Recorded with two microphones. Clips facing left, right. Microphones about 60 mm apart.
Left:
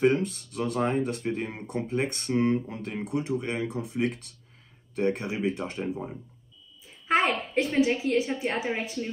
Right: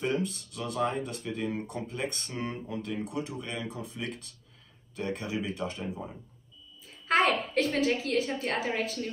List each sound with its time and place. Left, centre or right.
0.0 s speech: left
1.5 s speech: left
7.1 s a woman's voice: centre